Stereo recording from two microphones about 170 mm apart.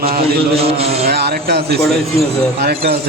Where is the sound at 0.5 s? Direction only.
35° right (ahead or behind).